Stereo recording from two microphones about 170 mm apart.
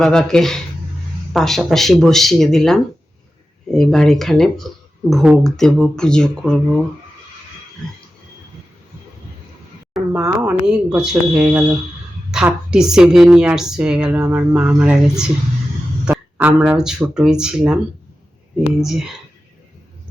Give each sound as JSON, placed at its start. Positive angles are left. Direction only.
{"t": 0.0, "sound": "speech", "side_deg": 5}
{"t": 10.1, "sound": "speech", "side_deg": -15}
{"t": 10.7, "sound": "speech", "side_deg": -5}
{"t": 16.4, "sound": "speech", "side_deg": -10}
{"t": 18.8, "sound": "speech", "side_deg": 0}